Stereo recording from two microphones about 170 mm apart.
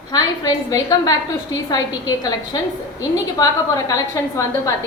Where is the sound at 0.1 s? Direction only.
20° left (ahead or behind).